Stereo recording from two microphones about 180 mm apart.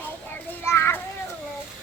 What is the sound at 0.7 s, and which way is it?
Children playing, 15° left (ahead or behind).